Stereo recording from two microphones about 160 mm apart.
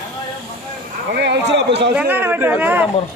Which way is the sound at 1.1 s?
90° right.